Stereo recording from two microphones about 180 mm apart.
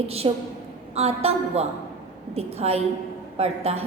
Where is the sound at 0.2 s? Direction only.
30° right (ahead or behind).